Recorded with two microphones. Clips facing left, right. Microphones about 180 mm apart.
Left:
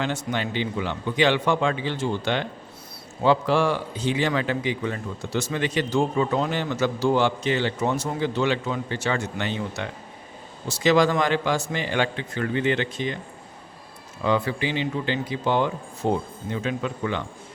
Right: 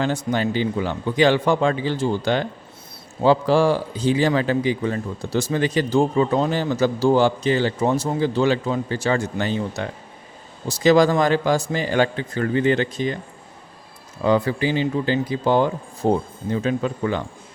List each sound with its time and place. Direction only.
0.0 s a man's voice: 40° right (ahead or behind)
14.3 s a man's voice: 40° right (ahead or behind)